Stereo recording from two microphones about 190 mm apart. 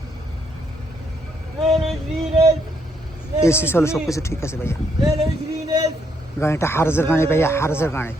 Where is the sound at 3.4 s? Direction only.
15° left (ahead or behind).